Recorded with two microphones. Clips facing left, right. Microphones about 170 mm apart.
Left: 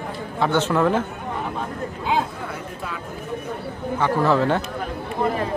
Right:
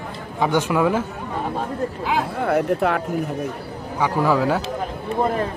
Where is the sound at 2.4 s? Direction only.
65° right (ahead or behind).